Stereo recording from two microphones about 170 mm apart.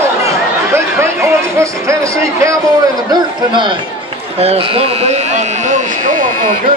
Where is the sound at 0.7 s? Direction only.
15° right (ahead or behind); by 6.2 s 45° right (ahead or behind).